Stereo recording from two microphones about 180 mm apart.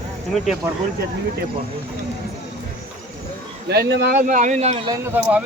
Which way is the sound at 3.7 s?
65° right (ahead or behind).